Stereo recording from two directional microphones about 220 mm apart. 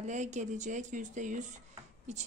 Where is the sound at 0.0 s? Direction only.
30° right (ahead or behind).